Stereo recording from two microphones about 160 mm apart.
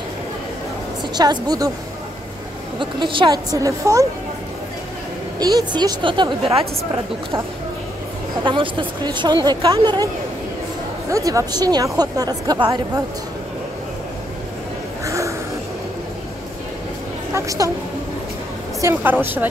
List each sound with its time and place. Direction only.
1.1 s speech: 25° right (ahead or behind)
2.8 s speech: 30° right (ahead or behind)
5.4 s speech: 25° right (ahead or behind)
8.5 s speech: 30° right (ahead or behind)
11.1 s speech: 20° right (ahead or behind)
15.0 s a sound: 20° right (ahead or behind)
17.3 s a sound: 20° right (ahead or behind)
18.8 s a woman's voice: 15° right (ahead or behind)